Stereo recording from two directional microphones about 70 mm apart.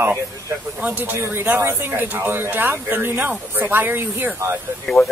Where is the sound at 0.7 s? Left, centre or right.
Right.